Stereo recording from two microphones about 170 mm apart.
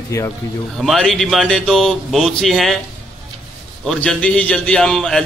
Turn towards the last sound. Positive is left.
turn(degrees=5)  # may be behind; listen again after turning